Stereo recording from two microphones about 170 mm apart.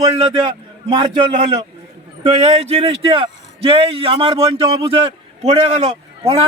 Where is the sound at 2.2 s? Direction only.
40° right (ahead or behind).